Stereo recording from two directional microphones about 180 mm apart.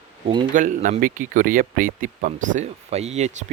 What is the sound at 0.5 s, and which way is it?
Speech, 45° right (ahead or behind).